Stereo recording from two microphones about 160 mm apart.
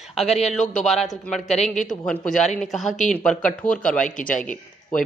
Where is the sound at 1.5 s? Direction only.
45° left (ahead or behind).